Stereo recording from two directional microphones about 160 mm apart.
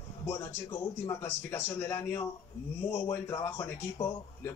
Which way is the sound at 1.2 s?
15° left (ahead or behind).